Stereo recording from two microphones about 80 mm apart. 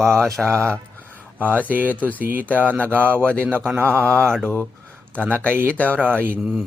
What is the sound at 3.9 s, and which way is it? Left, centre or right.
Mantra, right.